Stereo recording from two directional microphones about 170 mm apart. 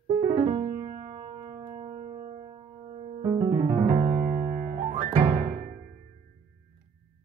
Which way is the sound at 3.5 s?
30° right (ahead or behind).